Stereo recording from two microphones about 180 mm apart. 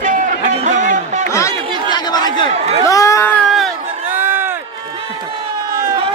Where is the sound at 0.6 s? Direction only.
45° right (ahead or behind).